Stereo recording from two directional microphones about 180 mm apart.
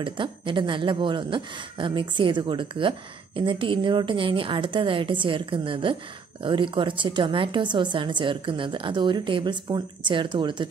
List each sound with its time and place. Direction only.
0.0 s a woman's voice: 30° right (ahead or behind)